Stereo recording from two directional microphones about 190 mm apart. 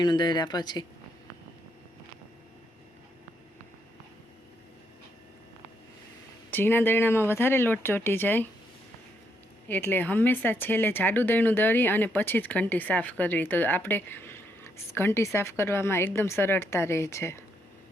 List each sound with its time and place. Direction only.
0.0 s speech: 25° left (ahead or behind)
6.5 s speech: 10° left (ahead or behind)
9.6 s speech: 10° left (ahead or behind)